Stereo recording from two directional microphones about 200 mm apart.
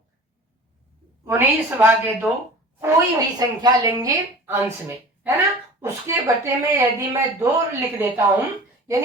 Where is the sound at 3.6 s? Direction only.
20° right (ahead or behind).